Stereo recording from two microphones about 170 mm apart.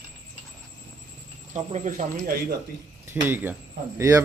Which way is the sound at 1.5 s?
45° right (ahead or behind).